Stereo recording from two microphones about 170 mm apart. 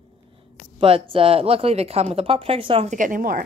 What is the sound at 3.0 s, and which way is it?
Speech, 55° right (ahead or behind).